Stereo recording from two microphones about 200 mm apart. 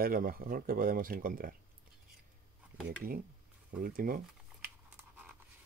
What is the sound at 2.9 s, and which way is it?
Speech, 45° right (ahead or behind).